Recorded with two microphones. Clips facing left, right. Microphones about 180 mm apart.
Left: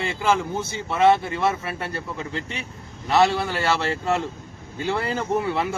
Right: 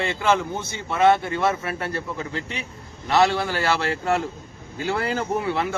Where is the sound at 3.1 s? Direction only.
Centre (ahead or behind).